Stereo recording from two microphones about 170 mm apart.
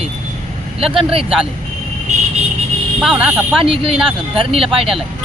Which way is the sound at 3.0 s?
5° right (ahead or behind).